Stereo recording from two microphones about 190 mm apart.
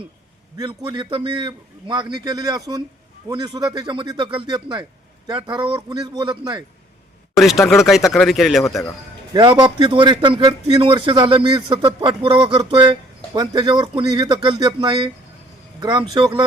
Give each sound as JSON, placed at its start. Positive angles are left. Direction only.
{"t": 0.5, "sound": "speech", "side_deg": -20}
{"t": 7.3, "sound": "speech", "side_deg": 0}
{"t": 9.3, "sound": "speech", "side_deg": -25}